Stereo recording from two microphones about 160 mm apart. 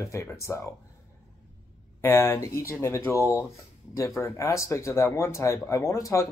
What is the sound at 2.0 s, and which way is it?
Speech, 15° left (ahead or behind).